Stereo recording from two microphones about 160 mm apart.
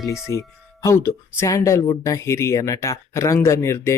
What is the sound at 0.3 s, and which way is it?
Speech, 20° left (ahead or behind).